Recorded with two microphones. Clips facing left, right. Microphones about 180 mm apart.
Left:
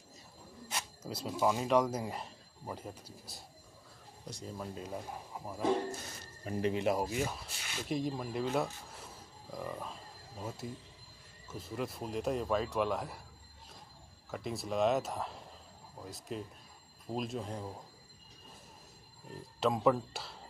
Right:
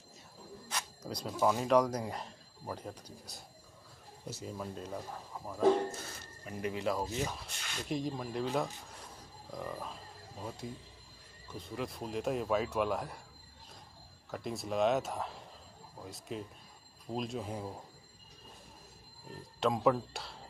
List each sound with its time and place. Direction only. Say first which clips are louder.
0.7 s speech: even; 5° left (ahead or behind)
6.4 s speech: left 3 dB; 25° left (ahead or behind)
7.2 s speech: even; 5° left (ahead or behind)
14.3 s speech: even; centre (ahead or behind)
19.6 s speech: even; centre (ahead or behind)